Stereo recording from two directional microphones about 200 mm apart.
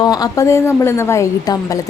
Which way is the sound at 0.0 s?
20° left (ahead or behind).